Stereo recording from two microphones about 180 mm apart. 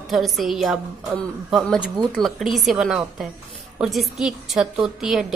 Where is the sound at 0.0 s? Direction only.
Centre (ahead or behind).